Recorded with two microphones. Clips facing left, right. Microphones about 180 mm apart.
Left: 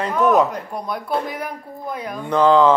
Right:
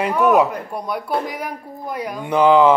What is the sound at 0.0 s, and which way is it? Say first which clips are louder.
A woman's voice: right 1 dB; 10° right (ahead or behind).